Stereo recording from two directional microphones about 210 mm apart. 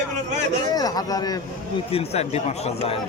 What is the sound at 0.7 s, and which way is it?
Speech, 20° left (ahead or behind).